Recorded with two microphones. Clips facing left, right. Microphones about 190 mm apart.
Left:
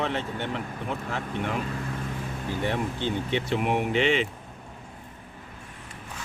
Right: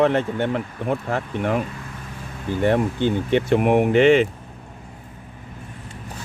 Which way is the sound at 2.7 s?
50° right (ahead or behind).